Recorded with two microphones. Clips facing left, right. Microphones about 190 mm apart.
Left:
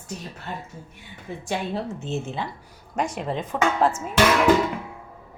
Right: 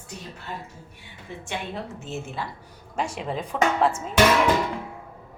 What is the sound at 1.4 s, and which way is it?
Speech, 30° left (ahead or behind).